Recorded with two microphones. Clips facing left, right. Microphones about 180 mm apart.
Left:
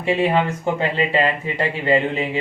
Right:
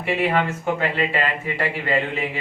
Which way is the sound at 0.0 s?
15° left (ahead or behind).